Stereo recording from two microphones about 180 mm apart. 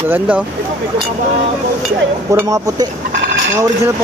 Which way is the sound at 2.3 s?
20° right (ahead or behind).